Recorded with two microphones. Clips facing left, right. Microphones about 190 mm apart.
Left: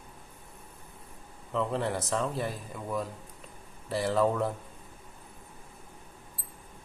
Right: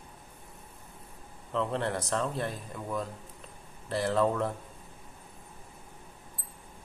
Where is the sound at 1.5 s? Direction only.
5° left (ahead or behind).